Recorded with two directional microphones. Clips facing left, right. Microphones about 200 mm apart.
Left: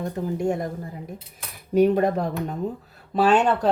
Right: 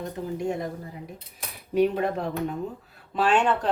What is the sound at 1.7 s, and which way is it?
Speech, 45° left (ahead or behind).